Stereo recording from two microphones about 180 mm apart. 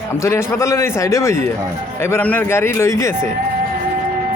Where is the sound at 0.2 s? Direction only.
15° left (ahead or behind).